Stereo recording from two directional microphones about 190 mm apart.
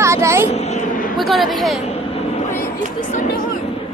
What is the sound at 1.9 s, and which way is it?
Vehicle, 35° left (ahead or behind).